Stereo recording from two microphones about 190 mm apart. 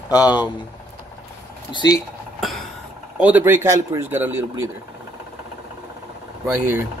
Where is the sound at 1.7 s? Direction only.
20° left (ahead or behind).